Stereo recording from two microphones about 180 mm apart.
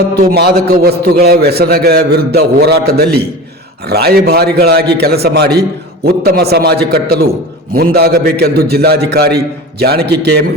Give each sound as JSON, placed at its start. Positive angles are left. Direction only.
{"t": 0.1, "sound": "a man's voice", "side_deg": -60}